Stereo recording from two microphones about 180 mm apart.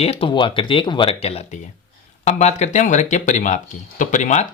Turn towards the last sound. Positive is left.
turn(degrees=40)  # may be behind; listen again after turning